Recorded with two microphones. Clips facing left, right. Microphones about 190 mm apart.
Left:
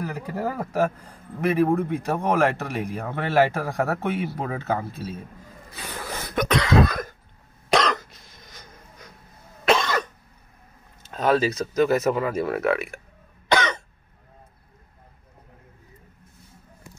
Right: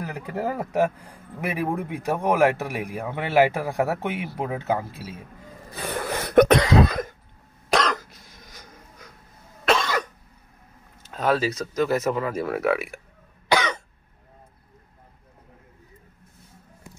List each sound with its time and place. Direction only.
0.0 s speech: 20° right (ahead or behind)
5.8 s cough: 60° right (ahead or behind)
6.6 s cough: 25° right (ahead or behind)
7.7 s cough: 5° right (ahead or behind)
11.1 s speech: 5° right (ahead or behind)
13.5 s cough: 10° right (ahead or behind)